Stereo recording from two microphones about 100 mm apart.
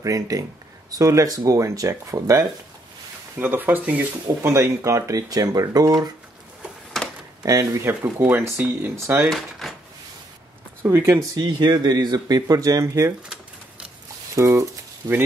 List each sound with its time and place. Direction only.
0.0 s speech: 35° right (ahead or behind)
3.3 s speech: 20° right (ahead or behind)
4.4 s speech: 30° right (ahead or behind)
7.4 s speech: 30° right (ahead or behind)
9.3 s speech: centre (ahead or behind)
10.8 s speech: 25° right (ahead or behind)
11.3 s speech: 45° right (ahead or behind)
14.3 s speech: 35° right (ahead or behind)